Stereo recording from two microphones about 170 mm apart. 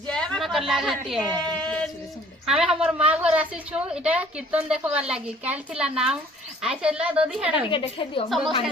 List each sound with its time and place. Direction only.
0.1 s a sound: 5° left (ahead or behind)
2.5 s a woman's voice: 5° right (ahead or behind)
7.7 s a woman's voice: 30° left (ahead or behind)
8.3 s speech: centre (ahead or behind)